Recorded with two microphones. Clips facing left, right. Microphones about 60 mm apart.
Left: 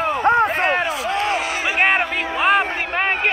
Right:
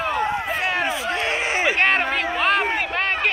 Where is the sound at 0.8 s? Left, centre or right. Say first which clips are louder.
Left 2 dB; right.